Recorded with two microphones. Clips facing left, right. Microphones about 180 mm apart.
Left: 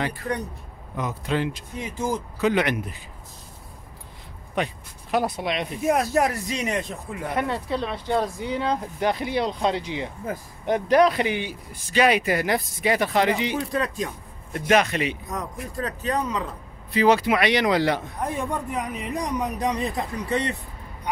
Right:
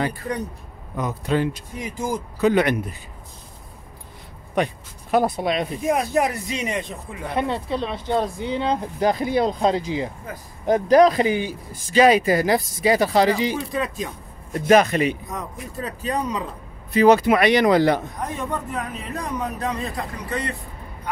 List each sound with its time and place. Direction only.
0.9 s speech: 40° right (ahead or behind)
1.8 s speech: 10° right (ahead or behind)
2.4 s speech: 40° right (ahead or behind)
5.1 s speech: 45° right (ahead or behind)
5.9 s speech: centre (ahead or behind)
7.3 s speech: 25° right (ahead or behind)
9.0 s speech: 45° right (ahead or behind)
13.7 s speech: centre (ahead or behind)
14.5 s speech: 40° right (ahead or behind)
15.2 s speech: centre (ahead or behind)
16.0 s speech: 10° right (ahead or behind)
16.9 s speech: 45° right (ahead or behind)
18.2 s speech: 10° left (ahead or behind)